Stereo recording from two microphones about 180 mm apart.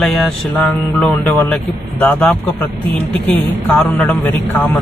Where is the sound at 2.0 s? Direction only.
5° left (ahead or behind).